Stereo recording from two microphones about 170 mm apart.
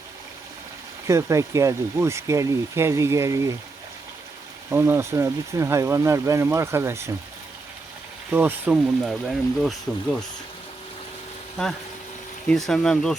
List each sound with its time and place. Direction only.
1.0 s speech: 15° right (ahead or behind)
4.7 s speech: 15° right (ahead or behind)
8.3 s speech: 10° right (ahead or behind)
12.5 s speech: centre (ahead or behind)